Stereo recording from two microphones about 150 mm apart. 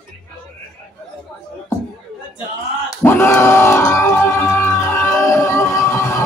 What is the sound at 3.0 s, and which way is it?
Crowd, 15° left (ahead or behind).